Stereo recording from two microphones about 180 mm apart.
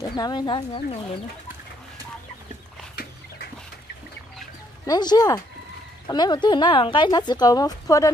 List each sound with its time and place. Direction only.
0.1 s a woman's voice: 25° left (ahead or behind)
4.8 s a woman's voice: 20° left (ahead or behind)